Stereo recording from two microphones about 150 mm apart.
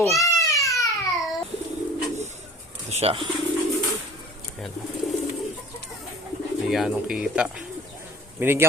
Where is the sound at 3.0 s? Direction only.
40° right (ahead or behind).